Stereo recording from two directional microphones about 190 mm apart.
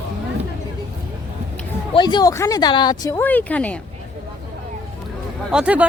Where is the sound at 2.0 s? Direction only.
25° left (ahead or behind); by 3.7 s 5° left (ahead or behind).